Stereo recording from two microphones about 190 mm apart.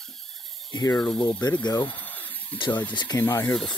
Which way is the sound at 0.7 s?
20° left (ahead or behind).